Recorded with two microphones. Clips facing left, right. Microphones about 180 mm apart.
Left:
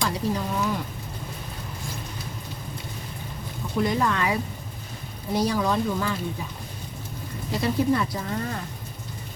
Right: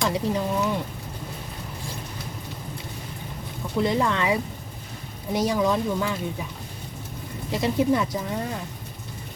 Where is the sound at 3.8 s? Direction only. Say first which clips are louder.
Right 2 dB; 25° right (ahead or behind).